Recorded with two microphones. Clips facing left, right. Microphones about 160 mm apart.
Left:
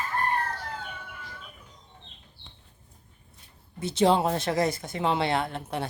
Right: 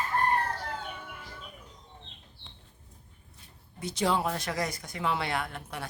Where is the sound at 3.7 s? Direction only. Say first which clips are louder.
Left 6 dB; 25° left (ahead or behind).